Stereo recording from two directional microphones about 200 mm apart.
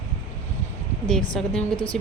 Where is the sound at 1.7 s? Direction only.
25° left (ahead or behind).